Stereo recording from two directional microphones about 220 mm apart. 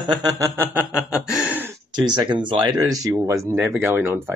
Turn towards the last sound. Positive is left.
turn(degrees=-10)  # may be behind; listen again after turning